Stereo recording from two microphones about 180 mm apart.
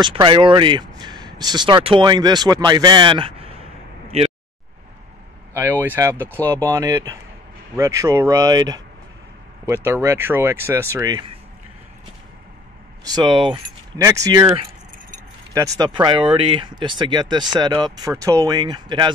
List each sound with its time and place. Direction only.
0.0 s speech: 25° right (ahead or behind)
5.5 s speech: 10° right (ahead or behind)
13.0 s speech: 25° right (ahead or behind)
15.5 s speech: 20° right (ahead or behind)